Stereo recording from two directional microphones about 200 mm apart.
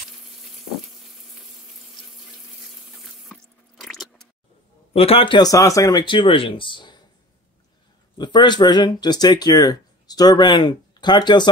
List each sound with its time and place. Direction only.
0.3 s sizzle: centre (ahead or behind)
3.3 s drip: centre (ahead or behind)
4.9 s speech: 30° left (ahead or behind)
8.2 s speech: 20° left (ahead or behind)